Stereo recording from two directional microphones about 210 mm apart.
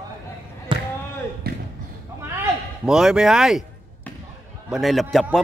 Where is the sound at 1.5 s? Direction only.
50° right (ahead or behind).